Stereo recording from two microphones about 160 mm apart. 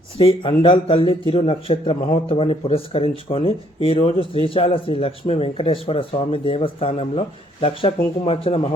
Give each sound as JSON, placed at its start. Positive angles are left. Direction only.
{"t": 0.2, "sound": "speech", "side_deg": 35}